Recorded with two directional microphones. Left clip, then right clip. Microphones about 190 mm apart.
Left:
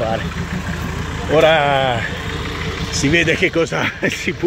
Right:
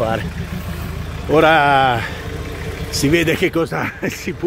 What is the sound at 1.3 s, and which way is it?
Speech, 40° right (ahead or behind).